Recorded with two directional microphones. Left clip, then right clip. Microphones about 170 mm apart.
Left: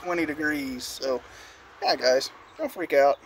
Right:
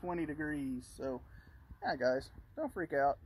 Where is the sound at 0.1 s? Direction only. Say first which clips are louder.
Left 13 dB; centre (ahead or behind).